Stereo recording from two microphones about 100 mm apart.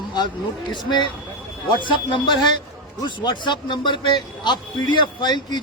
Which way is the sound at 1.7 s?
55° left (ahead or behind).